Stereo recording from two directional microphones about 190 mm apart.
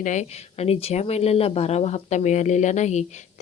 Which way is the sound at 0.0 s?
40° left (ahead or behind).